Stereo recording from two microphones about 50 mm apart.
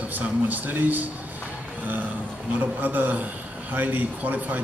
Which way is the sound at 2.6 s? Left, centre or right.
Right.